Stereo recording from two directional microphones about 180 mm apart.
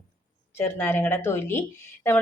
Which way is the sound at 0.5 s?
10° left (ahead or behind).